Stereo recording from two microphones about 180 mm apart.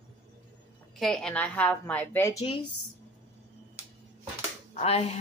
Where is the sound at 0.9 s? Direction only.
Centre (ahead or behind).